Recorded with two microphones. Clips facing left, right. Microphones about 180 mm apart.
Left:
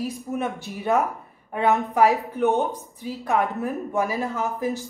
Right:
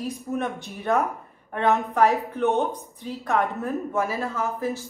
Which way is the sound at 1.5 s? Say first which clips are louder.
Left 1 dB; 10° left (ahead or behind).